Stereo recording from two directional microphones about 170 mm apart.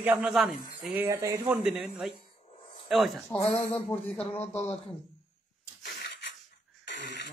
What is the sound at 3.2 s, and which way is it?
A man's voice, 15° left (ahead or behind).